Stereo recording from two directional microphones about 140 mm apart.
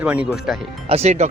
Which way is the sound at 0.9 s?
50° right (ahead or behind).